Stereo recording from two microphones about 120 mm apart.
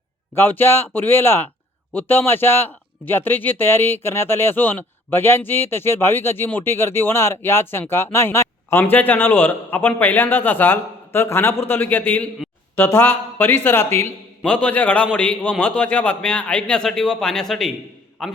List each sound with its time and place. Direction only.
0.3 s a man's voice: 15° left (ahead or behind)